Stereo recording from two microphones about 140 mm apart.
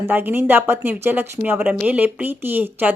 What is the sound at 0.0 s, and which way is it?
Speech, 15° right (ahead or behind).